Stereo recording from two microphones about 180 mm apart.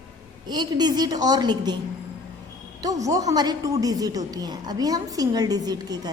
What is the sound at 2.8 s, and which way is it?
A woman's voice, 20° right (ahead or behind).